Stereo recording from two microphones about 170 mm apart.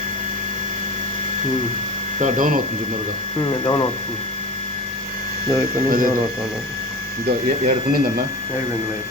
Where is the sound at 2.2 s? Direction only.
50° right (ahead or behind).